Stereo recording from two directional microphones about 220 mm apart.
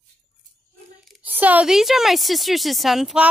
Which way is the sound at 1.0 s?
5° right (ahead or behind).